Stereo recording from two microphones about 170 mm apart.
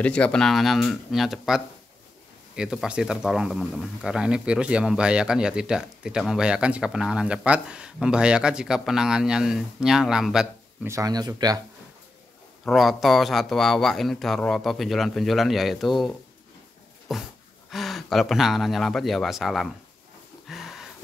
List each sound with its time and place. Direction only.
0.0 s speech: 5° left (ahead or behind)
10.9 s speech: 20° right (ahead or behind)
12.6 s speech: centre (ahead or behind)
17.1 s speech: centre (ahead or behind)
20.4 s a sound: centre (ahead or behind)